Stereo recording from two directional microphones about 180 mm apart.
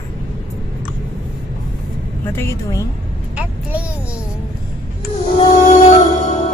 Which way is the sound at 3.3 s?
5° right (ahead or behind).